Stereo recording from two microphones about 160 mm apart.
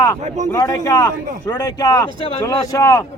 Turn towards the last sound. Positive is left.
turn(degrees=20)  # may be behind; listen again after turning